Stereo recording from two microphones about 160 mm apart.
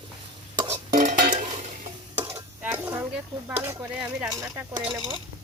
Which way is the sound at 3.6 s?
15° right (ahead or behind).